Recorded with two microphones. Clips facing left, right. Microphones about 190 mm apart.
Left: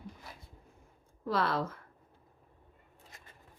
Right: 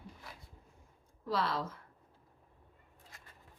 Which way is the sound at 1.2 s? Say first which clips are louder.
Left 3 dB; 55° left (ahead or behind).